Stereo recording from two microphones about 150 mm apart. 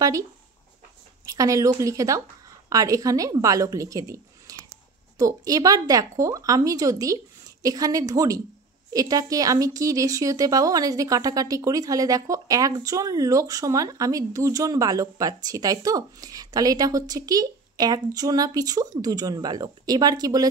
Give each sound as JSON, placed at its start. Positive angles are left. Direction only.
{"t": 1.2, "sound": "a woman's voice", "side_deg": -20}